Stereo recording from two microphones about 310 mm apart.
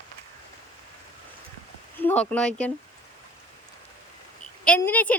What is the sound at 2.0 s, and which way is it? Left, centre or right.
Speech, centre.